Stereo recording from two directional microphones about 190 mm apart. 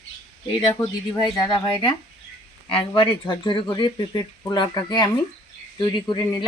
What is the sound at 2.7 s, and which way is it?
Speech, 25° left (ahead or behind).